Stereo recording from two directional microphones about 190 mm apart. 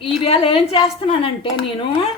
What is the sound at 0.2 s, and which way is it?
A woman's voice, 30° left (ahead or behind).